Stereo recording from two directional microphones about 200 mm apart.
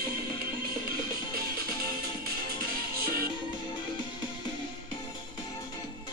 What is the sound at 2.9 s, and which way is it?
Music, 50° right (ahead or behind).